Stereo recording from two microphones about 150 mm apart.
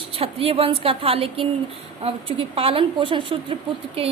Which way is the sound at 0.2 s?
40° right (ahead or behind).